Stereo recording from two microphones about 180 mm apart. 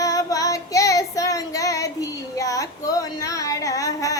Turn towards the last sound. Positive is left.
turn(degrees=20)  # may be behind; listen again after turning